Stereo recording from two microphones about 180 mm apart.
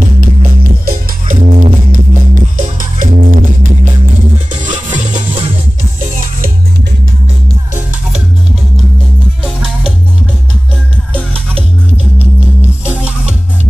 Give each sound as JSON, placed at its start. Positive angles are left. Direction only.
{"t": 0.0, "sound": "music", "side_deg": -50}